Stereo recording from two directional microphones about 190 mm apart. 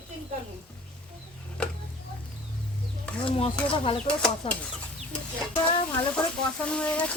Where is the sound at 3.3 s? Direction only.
30° left (ahead or behind).